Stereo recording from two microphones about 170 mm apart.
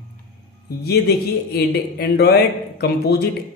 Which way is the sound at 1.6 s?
70° left (ahead or behind).